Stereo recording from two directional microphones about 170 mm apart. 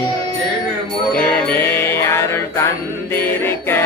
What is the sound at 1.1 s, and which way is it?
Music, 10° left (ahead or behind).